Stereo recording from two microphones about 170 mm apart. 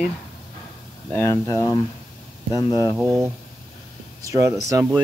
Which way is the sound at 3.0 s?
15° right (ahead or behind).